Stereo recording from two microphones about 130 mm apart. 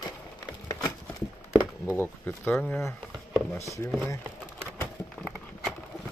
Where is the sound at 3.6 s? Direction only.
25° left (ahead or behind).